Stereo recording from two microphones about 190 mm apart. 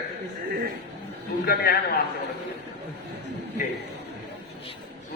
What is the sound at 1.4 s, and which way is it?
Speech, 55° left (ahead or behind).